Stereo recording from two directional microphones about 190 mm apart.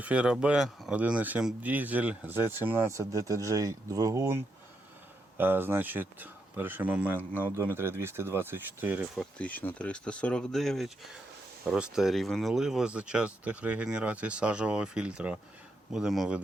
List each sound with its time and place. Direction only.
0.0 s speech: 5° right (ahead or behind)
9.4 s speech: 10° left (ahead or behind)